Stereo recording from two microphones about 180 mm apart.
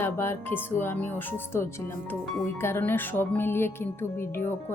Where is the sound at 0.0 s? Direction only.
15° left (ahead or behind).